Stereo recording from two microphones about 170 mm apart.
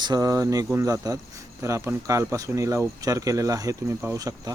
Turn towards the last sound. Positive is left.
turn(degrees=-20)  # may be behind; listen again after turning